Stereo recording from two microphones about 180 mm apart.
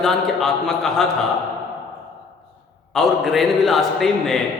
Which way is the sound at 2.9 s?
Centre (ahead or behind).